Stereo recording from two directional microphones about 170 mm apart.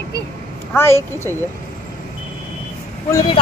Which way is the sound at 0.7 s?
15° left (ahead or behind).